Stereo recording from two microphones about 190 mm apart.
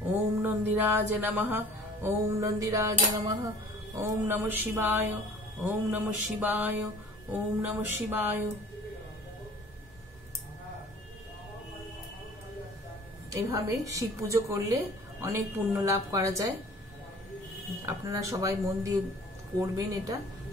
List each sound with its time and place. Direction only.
0.1 s a sound: 10° right (ahead or behind)
2.0 s a woman's voice: 15° right (ahead or behind)
13.3 s a woman's voice: 15° right (ahead or behind)
17.8 s a woman's voice: 15° right (ahead or behind)